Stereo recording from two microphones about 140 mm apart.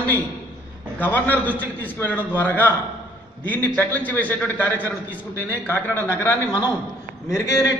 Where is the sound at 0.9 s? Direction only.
10° left (ahead or behind).